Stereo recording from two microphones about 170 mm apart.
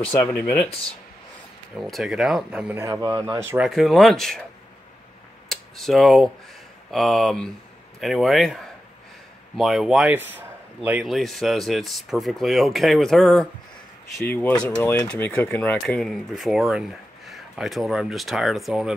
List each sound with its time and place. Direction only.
0.3 s speech: 5° left (ahead or behind)
1.8 s speech: centre (ahead or behind)
2.8 s speech: 20° right (ahead or behind)
3.6 s speech: centre (ahead or behind)
5.5 s speech: centre (ahead or behind)
9.6 s speech: centre (ahead or behind)